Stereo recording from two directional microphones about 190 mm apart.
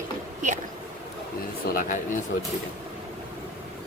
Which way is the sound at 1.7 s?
45° left (ahead or behind).